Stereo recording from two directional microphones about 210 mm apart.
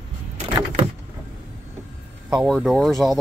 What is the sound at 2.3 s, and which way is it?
Speech, centre (ahead or behind).